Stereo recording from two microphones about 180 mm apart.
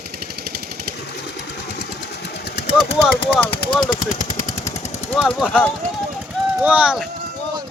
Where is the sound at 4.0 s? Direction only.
45° left (ahead or behind).